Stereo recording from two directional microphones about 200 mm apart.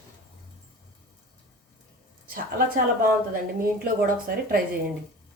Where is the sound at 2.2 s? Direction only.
45° right (ahead or behind).